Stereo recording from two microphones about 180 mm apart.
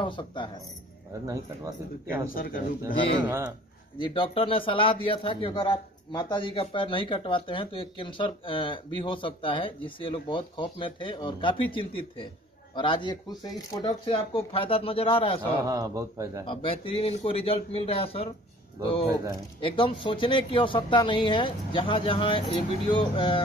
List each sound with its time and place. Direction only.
0.0 s a man's voice: 25° left (ahead or behind)
1.2 s speech: 15° right (ahead or behind)
2.2 s speech: 50° left (ahead or behind)
3.3 s speech: 10° right (ahead or behind)
4.0 s a man's voice: 30° left (ahead or behind)
15.6 s speech: 20° right (ahead or behind)
16.4 s a man's voice: 30° left (ahead or behind)
19.6 s a man's voice: 30° left (ahead or behind)